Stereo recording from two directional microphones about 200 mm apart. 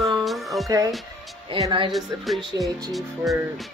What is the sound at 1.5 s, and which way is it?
Speech, 25° right (ahead or behind).